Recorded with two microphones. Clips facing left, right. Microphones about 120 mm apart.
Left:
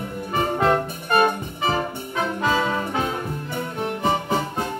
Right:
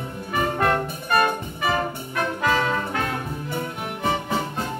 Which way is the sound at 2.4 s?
15° left (ahead or behind).